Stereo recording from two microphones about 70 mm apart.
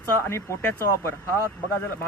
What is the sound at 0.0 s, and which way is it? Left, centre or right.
Speech, left.